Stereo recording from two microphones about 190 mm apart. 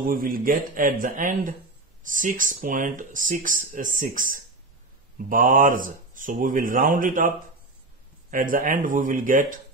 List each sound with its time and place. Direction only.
0.0 s speech: 50° right (ahead or behind)